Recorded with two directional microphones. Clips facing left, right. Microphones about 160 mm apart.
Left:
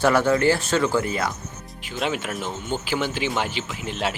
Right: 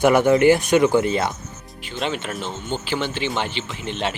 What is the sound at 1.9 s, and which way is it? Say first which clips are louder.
Speech: even; 5° left (ahead or behind).